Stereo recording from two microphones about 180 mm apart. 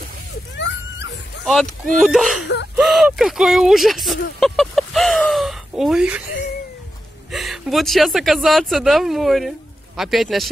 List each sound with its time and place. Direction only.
0.6 s dog: 85° left
1.4 s speech: centre (ahead or behind)
2.4 s gasp: 70° left (ahead or behind)
2.7 s speech: centre (ahead or behind)
7.2 s speech: centre (ahead or behind)